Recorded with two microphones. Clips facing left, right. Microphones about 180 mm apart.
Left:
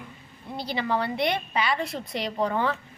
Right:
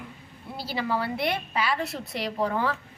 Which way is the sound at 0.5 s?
5° right (ahead or behind).